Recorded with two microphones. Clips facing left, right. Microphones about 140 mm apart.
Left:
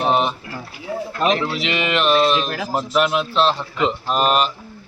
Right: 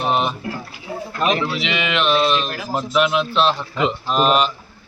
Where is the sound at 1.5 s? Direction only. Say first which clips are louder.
Left 1 dB; centre (ahead or behind).